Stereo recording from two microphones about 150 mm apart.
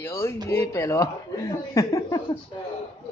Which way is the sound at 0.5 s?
20° left (ahead or behind).